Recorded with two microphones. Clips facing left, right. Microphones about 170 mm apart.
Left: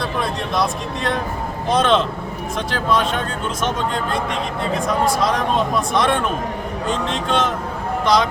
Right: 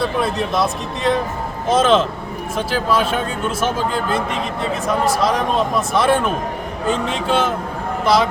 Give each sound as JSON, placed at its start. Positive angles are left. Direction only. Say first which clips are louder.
{"t": 0.2, "sound": "a man's voice", "louder": "left 1 dB", "side_deg": 0}